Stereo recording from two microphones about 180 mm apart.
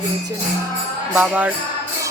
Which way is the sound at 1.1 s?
10° right (ahead or behind).